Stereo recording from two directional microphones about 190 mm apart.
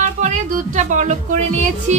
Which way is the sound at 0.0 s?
40° right (ahead or behind).